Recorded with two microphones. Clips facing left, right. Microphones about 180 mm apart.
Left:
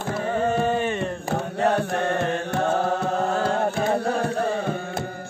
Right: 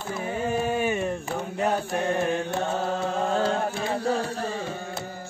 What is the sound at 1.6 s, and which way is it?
Mantra, 65° left (ahead or behind).